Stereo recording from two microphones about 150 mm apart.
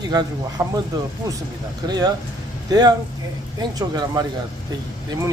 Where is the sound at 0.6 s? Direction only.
20° right (ahead or behind).